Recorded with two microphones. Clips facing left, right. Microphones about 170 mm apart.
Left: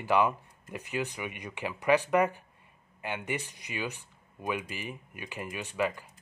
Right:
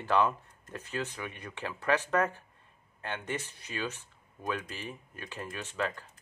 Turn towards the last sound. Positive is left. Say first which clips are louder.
# left 3 dB
turn(degrees=10)  # may be behind; listen again after turning